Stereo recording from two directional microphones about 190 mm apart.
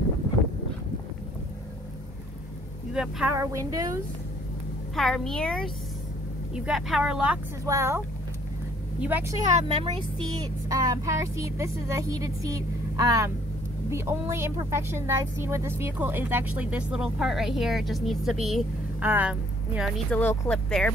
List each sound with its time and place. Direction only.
2.9 s speech: 5° right (ahead or behind)
3.3 s a woman's voice: 15° right (ahead or behind)
4.9 s speech: centre (ahead or behind)
7.6 s a woman's voice: 15° right (ahead or behind)
9.5 s speech: 35° right (ahead or behind)
10.4 s a woman's voice: 20° right (ahead or behind)
20.1 s speech: 10° left (ahead or behind)